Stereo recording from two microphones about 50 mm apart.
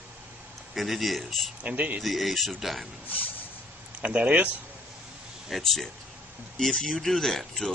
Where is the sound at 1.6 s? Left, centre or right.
Right.